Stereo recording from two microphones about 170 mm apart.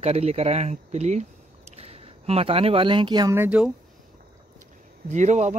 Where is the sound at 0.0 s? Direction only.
35° right (ahead or behind).